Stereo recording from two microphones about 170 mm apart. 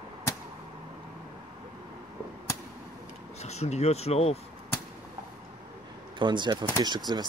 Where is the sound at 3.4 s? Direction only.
40° left (ahead or behind).